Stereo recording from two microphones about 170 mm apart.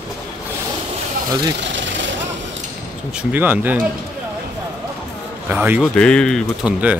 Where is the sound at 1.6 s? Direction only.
90° right.